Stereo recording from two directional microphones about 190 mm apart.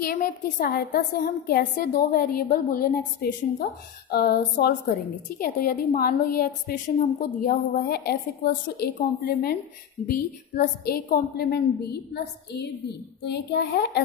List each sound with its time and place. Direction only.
0.0 s a woman's voice: 50° left (ahead or behind)